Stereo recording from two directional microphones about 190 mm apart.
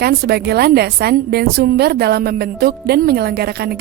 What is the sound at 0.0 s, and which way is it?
A woman's voice, 55° right (ahead or behind).